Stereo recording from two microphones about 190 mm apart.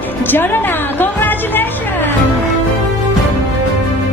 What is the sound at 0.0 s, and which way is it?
Music, 10° left (ahead or behind).